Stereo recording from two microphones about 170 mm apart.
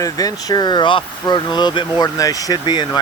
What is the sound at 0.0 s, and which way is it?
Speech, 20° left (ahead or behind).